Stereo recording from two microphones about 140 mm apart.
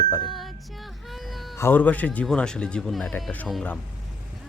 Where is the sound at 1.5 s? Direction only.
15° left (ahead or behind).